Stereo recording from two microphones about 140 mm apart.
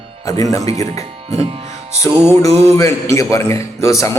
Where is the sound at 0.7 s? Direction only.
45° right (ahead or behind).